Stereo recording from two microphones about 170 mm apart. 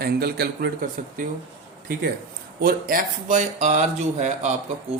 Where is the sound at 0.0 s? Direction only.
65° right (ahead or behind).